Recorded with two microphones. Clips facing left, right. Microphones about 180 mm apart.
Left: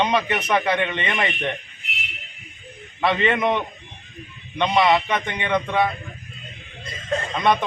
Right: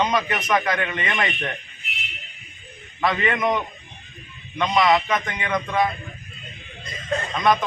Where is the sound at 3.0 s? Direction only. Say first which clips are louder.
Left 2 dB; 25° left (ahead or behind).